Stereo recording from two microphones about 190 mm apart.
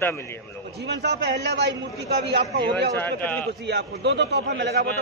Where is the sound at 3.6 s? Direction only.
65° right (ahead or behind).